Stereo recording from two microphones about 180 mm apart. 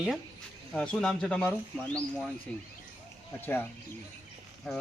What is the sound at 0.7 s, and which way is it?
Speech, 5° left (ahead or behind).